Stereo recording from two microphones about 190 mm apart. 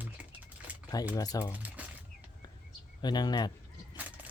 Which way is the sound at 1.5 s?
10° right (ahead or behind).